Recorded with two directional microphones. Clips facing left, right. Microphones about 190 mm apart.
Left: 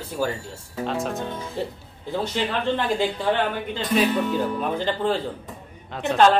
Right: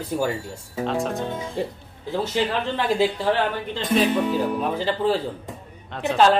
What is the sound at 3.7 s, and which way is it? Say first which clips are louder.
A woman's voice: right 1 dB; centre (ahead or behind).